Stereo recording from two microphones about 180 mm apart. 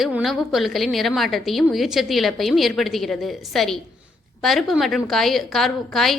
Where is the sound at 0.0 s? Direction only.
Centre (ahead or behind).